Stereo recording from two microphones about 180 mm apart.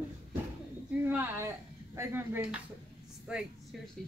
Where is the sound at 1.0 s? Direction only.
10° right (ahead or behind).